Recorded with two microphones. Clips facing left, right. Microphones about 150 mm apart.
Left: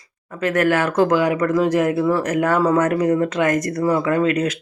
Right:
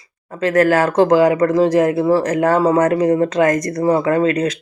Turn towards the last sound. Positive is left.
turn(degrees=-35)  # may be behind; listen again after turning